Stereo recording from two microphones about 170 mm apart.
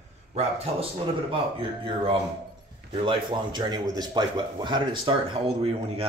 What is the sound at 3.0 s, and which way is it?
A man's voice, 30° right (ahead or behind).